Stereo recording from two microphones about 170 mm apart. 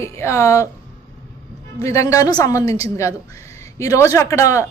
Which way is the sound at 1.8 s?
20° left (ahead or behind).